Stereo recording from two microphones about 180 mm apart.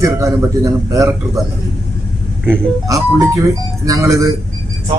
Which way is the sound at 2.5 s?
20° right (ahead or behind).